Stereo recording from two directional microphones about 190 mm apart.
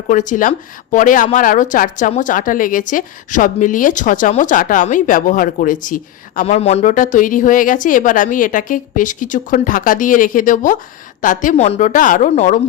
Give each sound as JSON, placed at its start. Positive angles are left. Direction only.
{"t": 0.1, "sound": "speech", "side_deg": 40}